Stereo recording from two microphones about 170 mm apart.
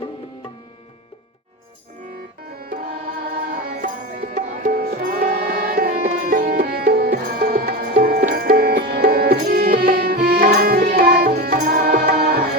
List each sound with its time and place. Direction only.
2.5 s music: 60° right (ahead or behind)